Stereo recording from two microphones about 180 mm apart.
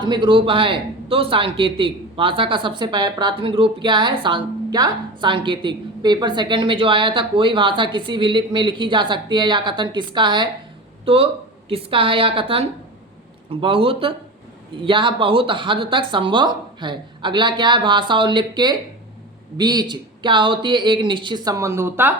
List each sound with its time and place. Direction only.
0.0 s a woman's voice: 25° right (ahead or behind)